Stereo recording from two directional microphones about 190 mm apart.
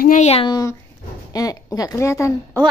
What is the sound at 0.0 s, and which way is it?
Speech, 40° left (ahead or behind).